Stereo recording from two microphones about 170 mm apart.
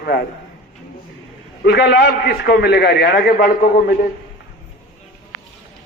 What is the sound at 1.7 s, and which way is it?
A man's voice, 80° left.